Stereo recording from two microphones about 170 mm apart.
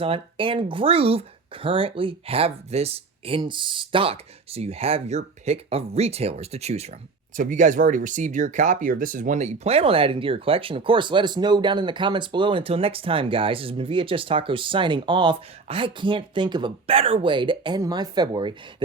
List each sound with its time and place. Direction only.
0.0 s speech: 30° right (ahead or behind)